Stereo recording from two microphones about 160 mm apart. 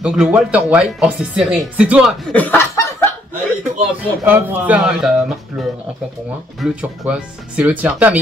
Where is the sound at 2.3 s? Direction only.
10° left (ahead or behind).